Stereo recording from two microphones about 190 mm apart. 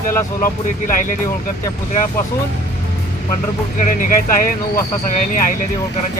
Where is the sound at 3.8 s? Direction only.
45° left (ahead or behind).